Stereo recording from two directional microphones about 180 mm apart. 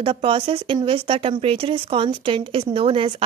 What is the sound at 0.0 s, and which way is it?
A woman's voice, 30° right (ahead or behind).